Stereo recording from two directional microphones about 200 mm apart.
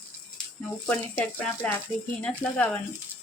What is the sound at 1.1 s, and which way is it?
Speech, 10° left (ahead or behind).